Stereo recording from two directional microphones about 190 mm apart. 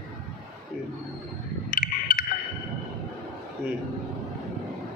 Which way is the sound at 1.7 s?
45° left (ahead or behind).